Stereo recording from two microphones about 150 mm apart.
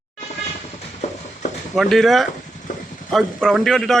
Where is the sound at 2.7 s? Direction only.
60° left (ahead or behind).